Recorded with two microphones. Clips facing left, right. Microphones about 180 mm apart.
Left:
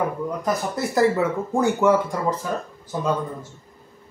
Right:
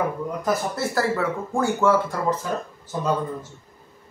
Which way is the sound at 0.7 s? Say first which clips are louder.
Left 4 dB; 20° left (ahead or behind).